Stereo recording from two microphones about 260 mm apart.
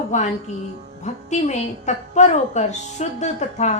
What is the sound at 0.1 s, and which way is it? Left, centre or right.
A woman's voice, left.